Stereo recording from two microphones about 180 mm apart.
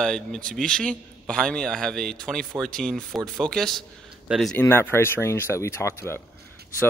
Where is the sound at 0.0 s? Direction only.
5° left (ahead or behind).